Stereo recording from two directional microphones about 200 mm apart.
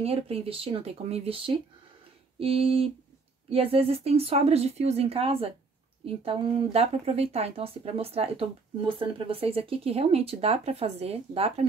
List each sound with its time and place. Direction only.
0.0 s a woman's voice: 30° right (ahead or behind)